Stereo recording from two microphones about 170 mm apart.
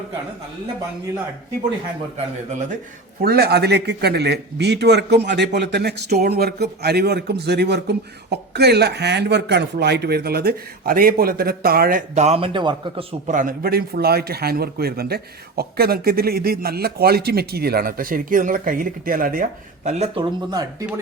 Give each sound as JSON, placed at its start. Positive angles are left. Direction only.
{"t": 2.1, "sound": "speech", "side_deg": -45}
{"t": 3.2, "sound": "a man's voice", "side_deg": -65}
{"t": 13.3, "sound": "a man's voice", "side_deg": -55}
{"t": 20.5, "sound": "speech", "side_deg": -20}